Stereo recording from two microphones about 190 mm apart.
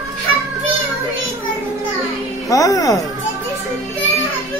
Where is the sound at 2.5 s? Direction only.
20° left (ahead or behind).